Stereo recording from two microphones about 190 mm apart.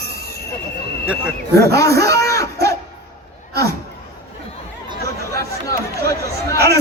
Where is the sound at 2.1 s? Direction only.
15° left (ahead or behind).